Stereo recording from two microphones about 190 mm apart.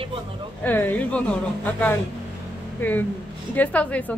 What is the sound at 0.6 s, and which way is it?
A woman's voice, 10° left (ahead or behind).